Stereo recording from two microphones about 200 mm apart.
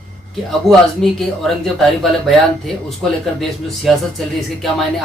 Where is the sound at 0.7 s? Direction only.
Centre (ahead or behind).